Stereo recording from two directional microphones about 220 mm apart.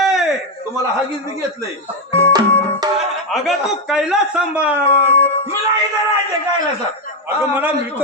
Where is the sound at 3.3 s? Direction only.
Centre (ahead or behind).